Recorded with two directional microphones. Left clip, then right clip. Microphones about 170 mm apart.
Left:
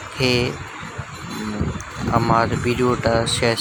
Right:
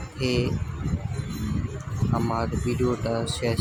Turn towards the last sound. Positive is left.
turn(degrees=15)  # may be behind; listen again after turning